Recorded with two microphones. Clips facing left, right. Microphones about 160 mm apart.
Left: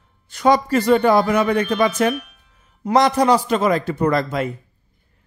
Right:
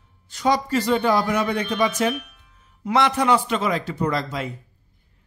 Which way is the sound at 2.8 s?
40° left (ahead or behind).